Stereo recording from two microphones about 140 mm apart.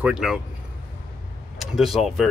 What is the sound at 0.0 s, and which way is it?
Speech, 5° right (ahead or behind).